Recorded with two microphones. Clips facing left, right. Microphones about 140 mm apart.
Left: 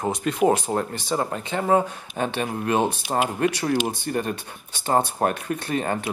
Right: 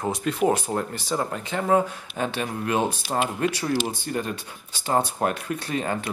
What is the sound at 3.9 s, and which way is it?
Speech, 55° left (ahead or behind).